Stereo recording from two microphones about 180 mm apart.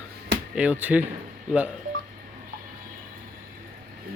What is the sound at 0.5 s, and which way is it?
Speech, 5° right (ahead or behind).